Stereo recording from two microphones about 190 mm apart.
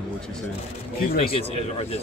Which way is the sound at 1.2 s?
30° left (ahead or behind).